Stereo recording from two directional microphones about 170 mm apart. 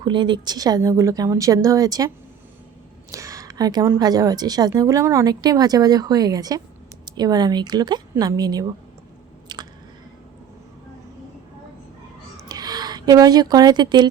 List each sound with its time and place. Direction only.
0.0 s a woman's voice: 25° right (ahead or behind)
9.5 s squish: 25° right (ahead or behind)
12.5 s speech: 25° right (ahead or behind)